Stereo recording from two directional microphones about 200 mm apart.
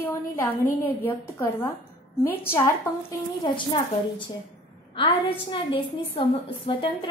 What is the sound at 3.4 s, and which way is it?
A woman's voice, 20° left (ahead or behind).